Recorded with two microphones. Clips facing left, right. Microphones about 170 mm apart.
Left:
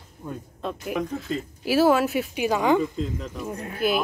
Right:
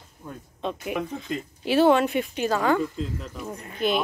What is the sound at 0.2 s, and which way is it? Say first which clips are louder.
Speech: left 5 dB; 15° left (ahead or behind).